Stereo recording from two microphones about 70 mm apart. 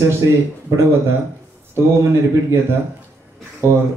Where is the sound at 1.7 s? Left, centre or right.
Right.